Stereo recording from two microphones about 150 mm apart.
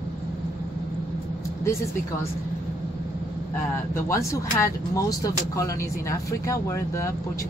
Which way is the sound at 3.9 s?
20° left (ahead or behind).